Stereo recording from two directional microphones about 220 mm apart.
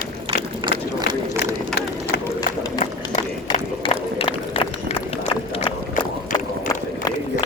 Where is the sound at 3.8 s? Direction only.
25° left (ahead or behind).